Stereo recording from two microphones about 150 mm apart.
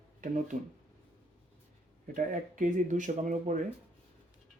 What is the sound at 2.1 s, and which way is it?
Speech, 55° right (ahead or behind).